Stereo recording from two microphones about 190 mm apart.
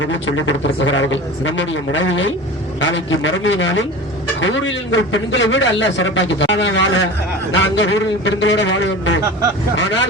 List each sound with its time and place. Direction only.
0.0 s a man's voice: 90° left; by 10.1 s 70° left (ahead or behind)